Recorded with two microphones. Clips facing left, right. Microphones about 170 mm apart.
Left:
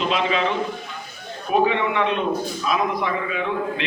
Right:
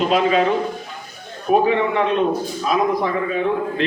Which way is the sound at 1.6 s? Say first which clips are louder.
Right 3 dB; 35° right (ahead or behind).